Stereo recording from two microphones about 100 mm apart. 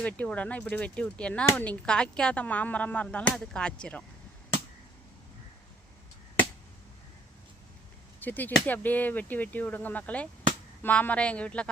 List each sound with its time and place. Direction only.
0.0 s speech: 15° left (ahead or behind)
8.2 s speech: 20° left (ahead or behind)